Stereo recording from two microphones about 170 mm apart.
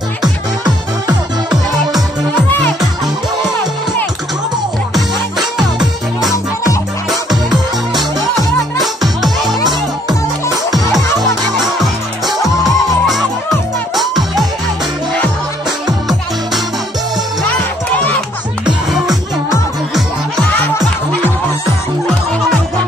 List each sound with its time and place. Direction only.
0.2 s music: 25° right (ahead or behind)
4.9 s music: centre (ahead or behind)
8.7 s music: centre (ahead or behind)
11.5 s music: centre (ahead or behind)
18.7 s music: centre (ahead or behind)
20.5 s music: 10° left (ahead or behind)